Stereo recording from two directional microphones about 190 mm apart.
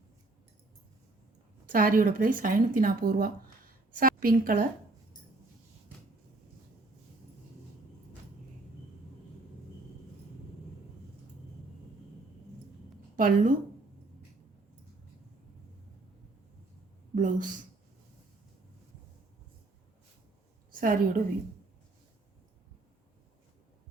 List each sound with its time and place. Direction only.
1.7 s a woman's voice: 45° right (ahead or behind)
13.1 s a woman's voice: 45° right (ahead or behind)
17.2 s speech: 45° right (ahead or behind)
20.7 s a woman's voice: 50° right (ahead or behind)